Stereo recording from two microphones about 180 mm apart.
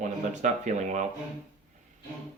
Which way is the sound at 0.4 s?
40° right (ahead or behind).